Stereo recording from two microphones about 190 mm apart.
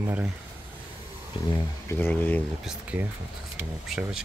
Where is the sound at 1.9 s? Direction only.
10° left (ahead or behind).